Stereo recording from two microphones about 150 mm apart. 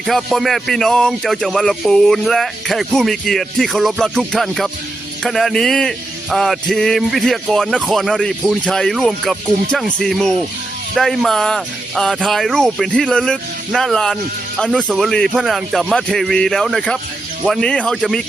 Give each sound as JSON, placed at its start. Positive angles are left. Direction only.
{"t": 0.0, "sound": "music", "side_deg": 0}